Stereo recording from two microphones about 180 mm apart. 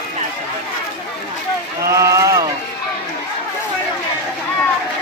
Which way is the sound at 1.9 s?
15° right (ahead or behind).